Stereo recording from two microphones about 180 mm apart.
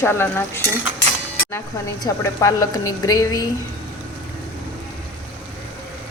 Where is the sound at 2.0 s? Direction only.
20° left (ahead or behind).